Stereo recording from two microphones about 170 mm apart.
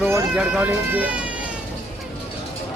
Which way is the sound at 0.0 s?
5° right (ahead or behind).